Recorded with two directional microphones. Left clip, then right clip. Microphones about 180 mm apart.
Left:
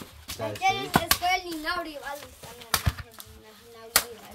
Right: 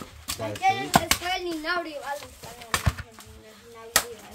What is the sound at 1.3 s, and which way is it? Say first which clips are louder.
Speech: even; 60° left (ahead or behind).